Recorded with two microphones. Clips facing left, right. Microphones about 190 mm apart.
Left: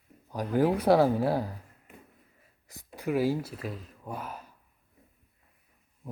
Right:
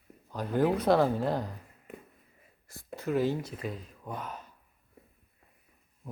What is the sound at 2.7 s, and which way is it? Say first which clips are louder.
Speech: left 1 dB; 15° left (ahead or behind).